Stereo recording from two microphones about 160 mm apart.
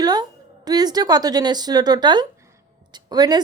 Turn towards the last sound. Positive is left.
turn(degrees=-25)  # may be behind; listen again after turning